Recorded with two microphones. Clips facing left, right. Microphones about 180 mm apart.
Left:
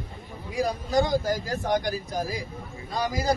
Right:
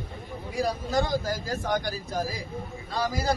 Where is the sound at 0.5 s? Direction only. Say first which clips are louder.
Left 2 dB; 15° left (ahead or behind).